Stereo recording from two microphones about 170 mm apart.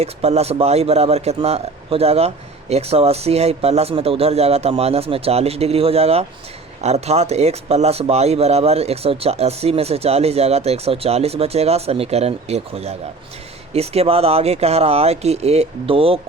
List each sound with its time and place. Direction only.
0.0 s speech: 40° right (ahead or behind)